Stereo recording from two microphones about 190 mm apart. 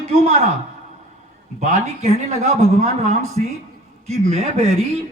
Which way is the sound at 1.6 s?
40° right (ahead or behind).